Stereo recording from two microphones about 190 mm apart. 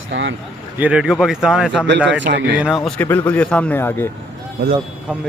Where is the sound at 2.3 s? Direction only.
65° right (ahead or behind).